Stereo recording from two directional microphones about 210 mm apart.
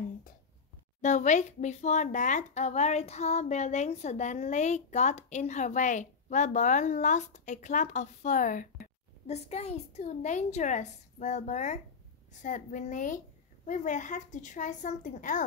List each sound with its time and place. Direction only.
1.0 s a child's voice: 35° left (ahead or behind)